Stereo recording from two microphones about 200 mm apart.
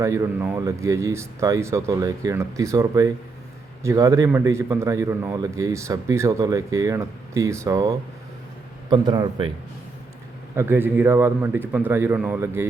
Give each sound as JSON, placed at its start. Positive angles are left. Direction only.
{"t": 0.0, "sound": "a man's voice", "side_deg": -15}
{"t": 10.5, "sound": "a man's voice", "side_deg": -10}